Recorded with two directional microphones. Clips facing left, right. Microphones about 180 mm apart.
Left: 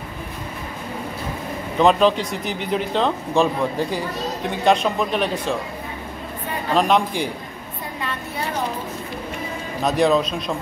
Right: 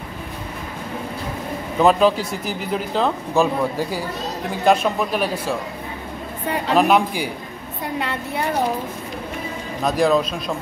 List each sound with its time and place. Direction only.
1.8 s speech: 5° right (ahead or behind)
4.6 s speech: 5° right (ahead or behind)
6.7 s speech: 10° right (ahead or behind)
9.8 s speech: centre (ahead or behind)